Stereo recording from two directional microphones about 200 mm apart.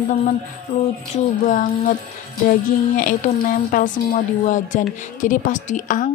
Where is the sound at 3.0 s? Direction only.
45° left (ahead or behind).